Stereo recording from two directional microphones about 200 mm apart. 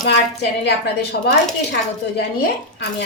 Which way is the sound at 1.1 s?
55° left (ahead or behind).